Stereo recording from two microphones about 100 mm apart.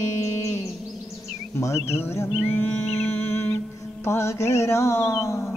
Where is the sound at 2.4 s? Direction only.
20° left (ahead or behind).